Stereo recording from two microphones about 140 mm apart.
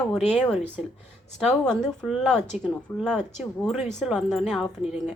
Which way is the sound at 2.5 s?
55° left (ahead or behind).